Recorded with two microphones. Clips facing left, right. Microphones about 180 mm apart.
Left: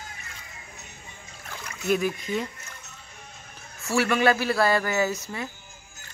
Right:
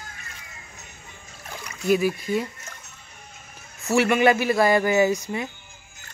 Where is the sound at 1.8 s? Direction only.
5° right (ahead or behind).